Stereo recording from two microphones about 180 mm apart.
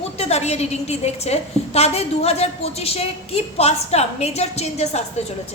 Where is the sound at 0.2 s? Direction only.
35° left (ahead or behind).